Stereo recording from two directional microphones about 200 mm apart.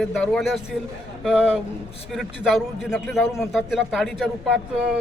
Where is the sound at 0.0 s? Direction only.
Centre (ahead or behind).